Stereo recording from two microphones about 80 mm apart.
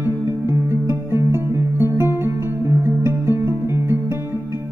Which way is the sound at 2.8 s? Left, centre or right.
Right.